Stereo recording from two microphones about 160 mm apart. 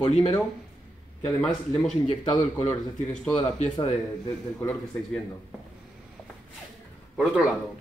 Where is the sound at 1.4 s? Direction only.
5° left (ahead or behind).